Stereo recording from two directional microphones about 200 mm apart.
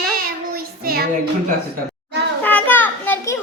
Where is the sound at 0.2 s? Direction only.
50° right (ahead or behind).